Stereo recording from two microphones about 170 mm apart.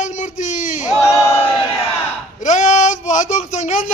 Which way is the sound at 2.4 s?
45° left (ahead or behind).